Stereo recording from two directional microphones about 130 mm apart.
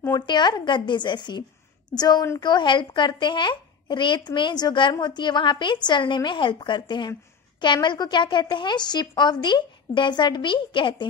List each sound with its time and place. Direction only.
0.1 s a woman's voice: 35° left (ahead or behind)